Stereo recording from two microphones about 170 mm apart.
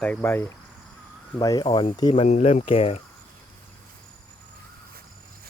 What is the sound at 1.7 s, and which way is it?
Speech, 30° left (ahead or behind).